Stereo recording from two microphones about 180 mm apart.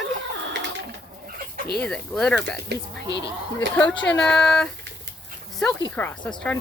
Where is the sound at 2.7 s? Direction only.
65° right (ahead or behind).